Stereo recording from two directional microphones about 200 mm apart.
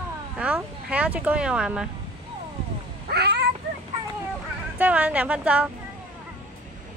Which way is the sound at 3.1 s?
55° right (ahead or behind).